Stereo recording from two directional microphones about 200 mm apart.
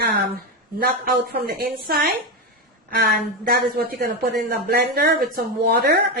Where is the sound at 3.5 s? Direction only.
50° right (ahead or behind).